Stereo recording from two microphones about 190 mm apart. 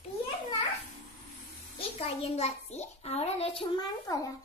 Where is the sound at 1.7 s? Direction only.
30° left (ahead or behind).